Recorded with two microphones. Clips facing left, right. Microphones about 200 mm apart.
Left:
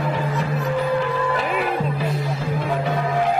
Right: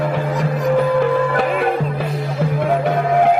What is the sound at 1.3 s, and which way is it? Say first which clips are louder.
Music: right 5 dB; 55° right (ahead or behind).